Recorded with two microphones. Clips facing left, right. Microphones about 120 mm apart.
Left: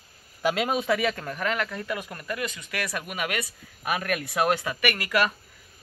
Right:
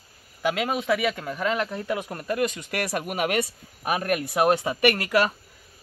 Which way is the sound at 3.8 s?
30° right (ahead or behind).